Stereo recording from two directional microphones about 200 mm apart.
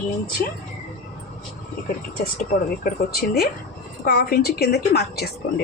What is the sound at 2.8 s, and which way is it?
A woman's voice, 50° left (ahead or behind).